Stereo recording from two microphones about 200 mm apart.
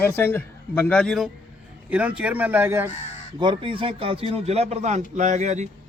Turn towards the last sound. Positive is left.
turn(degrees=-35)  # may be behind; listen again after turning